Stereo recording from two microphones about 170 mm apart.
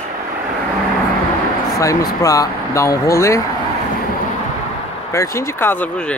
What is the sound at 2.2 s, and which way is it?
Speech, 20° left (ahead or behind).